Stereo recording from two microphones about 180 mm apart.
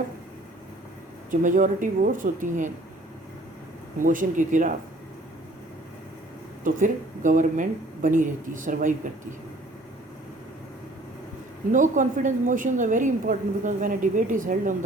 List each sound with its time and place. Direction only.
1.3 s a woman's voice: 45° right (ahead or behind)
4.0 s a woman's voice: 45° right (ahead or behind)
6.7 s a woman's voice: 45° right (ahead or behind)
11.7 s a woman's voice: 45° right (ahead or behind)